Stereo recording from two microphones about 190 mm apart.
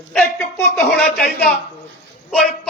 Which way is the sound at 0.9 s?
Centre (ahead or behind).